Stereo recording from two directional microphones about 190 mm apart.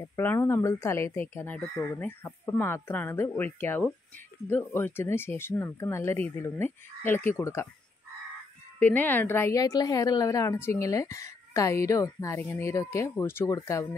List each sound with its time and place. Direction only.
0.0 s a woman's voice: 15° left (ahead or behind)
8.7 s a woman's voice: 10° left (ahead or behind)